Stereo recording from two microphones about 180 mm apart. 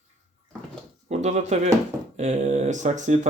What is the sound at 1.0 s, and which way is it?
Speech, 40° right (ahead or behind).